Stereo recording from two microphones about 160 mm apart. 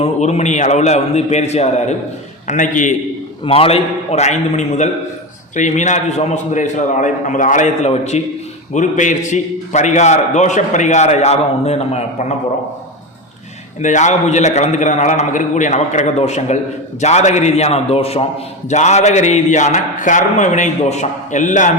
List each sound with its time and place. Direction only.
0.0 s a man's voice: 45° left (ahead or behind)
3.4 s a man's voice: 35° left (ahead or behind)
13.8 s a man's voice: 50° left (ahead or behind)